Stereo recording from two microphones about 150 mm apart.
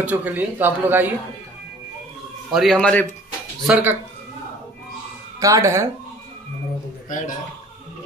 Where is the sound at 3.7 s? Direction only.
10° right (ahead or behind).